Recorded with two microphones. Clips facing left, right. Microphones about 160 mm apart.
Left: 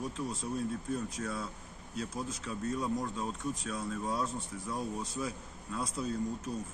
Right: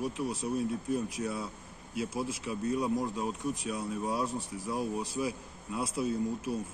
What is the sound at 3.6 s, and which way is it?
Speech, 20° right (ahead or behind).